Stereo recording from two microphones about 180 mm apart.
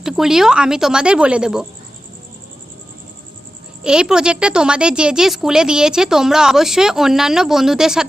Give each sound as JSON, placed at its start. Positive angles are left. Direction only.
{"t": 0.0, "sound": "speech", "side_deg": 0}
{"t": 3.8, "sound": "speech", "side_deg": -5}